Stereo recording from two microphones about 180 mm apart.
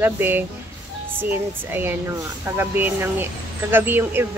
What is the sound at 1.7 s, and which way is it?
Speech, 10° right (ahead or behind).